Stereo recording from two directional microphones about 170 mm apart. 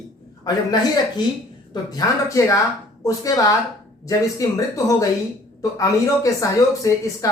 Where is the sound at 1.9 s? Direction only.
20° left (ahead or behind).